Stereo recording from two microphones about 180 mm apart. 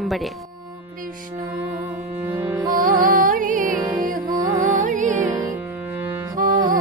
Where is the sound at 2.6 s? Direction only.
50° right (ahead or behind).